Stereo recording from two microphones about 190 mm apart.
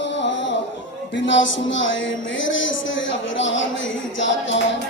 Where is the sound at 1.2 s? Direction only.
80° left.